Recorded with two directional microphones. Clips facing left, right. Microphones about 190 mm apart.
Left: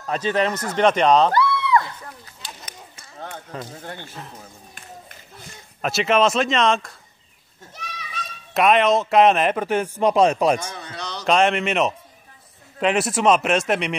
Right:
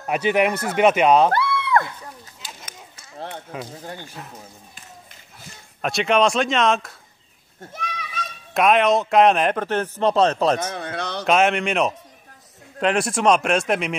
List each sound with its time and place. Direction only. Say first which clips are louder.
0.0 s speech: right 2 dB; 10° right (ahead or behind)
1.3 s a sound: left 1 dB; 55° right (ahead or behind)
3.2 s run: right 2 dB; 30° right (ahead or behind)
3.5 s speech: right 1 dB; 10° right (ahead or behind)
5.8 s a man's voice: even; centre (ahead or behind)
7.7 s children playing: right 4 dB; 50° right (ahead or behind)
8.5 s a man's voice: even; centre (ahead or behind)
10.7 s a sound: right 5 dB; 55° right (ahead or behind)
11.2 s a man's voice: even; centre (ahead or behind)